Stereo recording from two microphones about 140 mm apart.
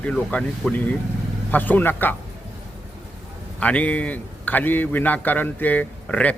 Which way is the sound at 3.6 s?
10° left (ahead or behind).